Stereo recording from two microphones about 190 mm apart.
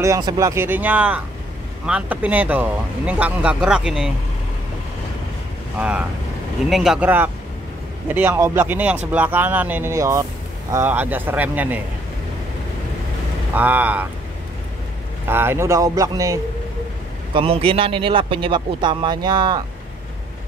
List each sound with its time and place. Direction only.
0.0 s speech: 20° right (ahead or behind)
5.8 s speech: 5° right (ahead or behind)
13.6 s speech: 10° right (ahead or behind)
15.2 s speech: 10° right (ahead or behind)
17.3 s a man's voice: 30° right (ahead or behind)